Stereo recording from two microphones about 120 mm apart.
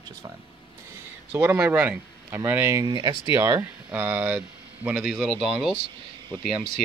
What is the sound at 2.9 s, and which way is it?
Speech, 40° right (ahead or behind).